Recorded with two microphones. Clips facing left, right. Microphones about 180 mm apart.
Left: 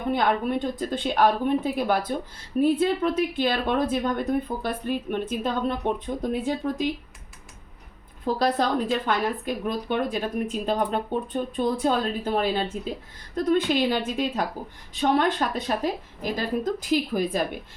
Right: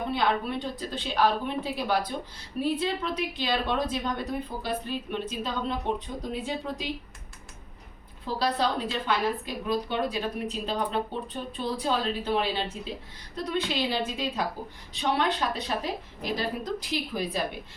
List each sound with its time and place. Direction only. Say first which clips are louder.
0.1 s a woman's voice: left 6 dB; 50° left (ahead or behind)
8.2 s a woman's voice: left 4 dB; 50° left (ahead or behind)